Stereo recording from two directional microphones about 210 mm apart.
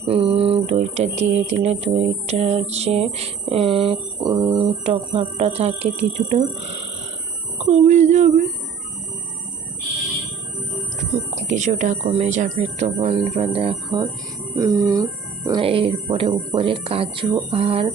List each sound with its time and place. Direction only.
0.1 s speech: 25° right (ahead or behind)
7.7 s speech: 35° right (ahead or behind)
11.3 s speech: 35° right (ahead or behind)